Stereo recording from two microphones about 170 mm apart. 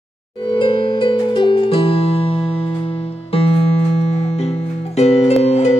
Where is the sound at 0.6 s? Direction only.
30° left (ahead or behind).